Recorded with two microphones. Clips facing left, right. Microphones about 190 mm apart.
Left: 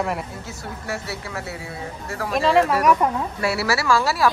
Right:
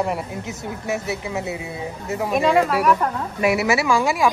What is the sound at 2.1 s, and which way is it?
Speech, 20° right (ahead or behind).